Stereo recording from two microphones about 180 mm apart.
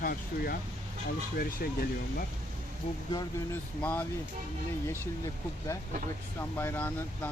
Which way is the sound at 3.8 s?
10° left (ahead or behind).